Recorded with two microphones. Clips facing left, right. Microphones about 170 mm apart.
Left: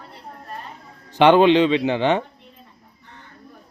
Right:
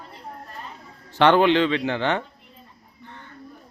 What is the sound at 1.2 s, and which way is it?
Speech, 15° left (ahead or behind).